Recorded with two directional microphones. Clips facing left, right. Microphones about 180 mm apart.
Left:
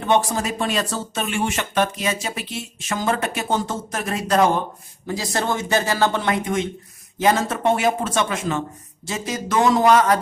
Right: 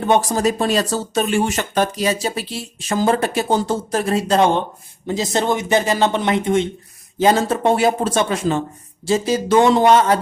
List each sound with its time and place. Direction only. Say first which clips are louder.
0.0 s speech: right 4 dB; 40° right (ahead or behind)